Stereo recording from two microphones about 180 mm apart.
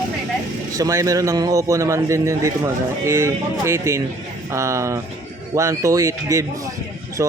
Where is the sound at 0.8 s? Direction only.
20° right (ahead or behind).